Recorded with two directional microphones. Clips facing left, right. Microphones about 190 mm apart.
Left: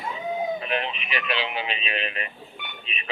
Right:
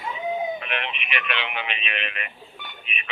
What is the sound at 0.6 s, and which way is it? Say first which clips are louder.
Speech: left 3 dB; 35° left (ahead or behind).